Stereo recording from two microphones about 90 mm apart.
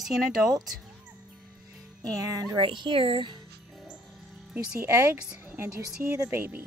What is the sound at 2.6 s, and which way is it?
Speech, 65° right (ahead or behind).